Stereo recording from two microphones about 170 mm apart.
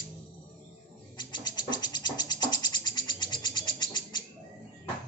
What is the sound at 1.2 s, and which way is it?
Music, 25° left (ahead or behind).